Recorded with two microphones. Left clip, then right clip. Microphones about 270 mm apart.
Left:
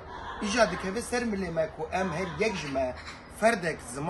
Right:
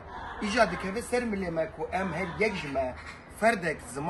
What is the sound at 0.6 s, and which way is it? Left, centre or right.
A man's voice, centre.